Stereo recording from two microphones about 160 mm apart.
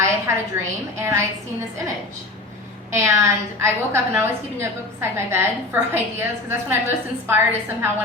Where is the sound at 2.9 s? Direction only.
20° right (ahead or behind).